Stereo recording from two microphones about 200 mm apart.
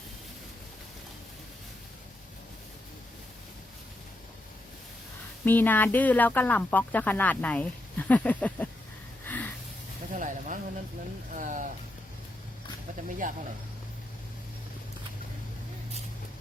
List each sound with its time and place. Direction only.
5.5 s speech: 10° left (ahead or behind)
9.2 s a sound: 10° left (ahead or behind)
10.2 s music: 40° right (ahead or behind)
11.3 s speech: 40° right (ahead or behind)
13.1 s speech: 40° right (ahead or behind)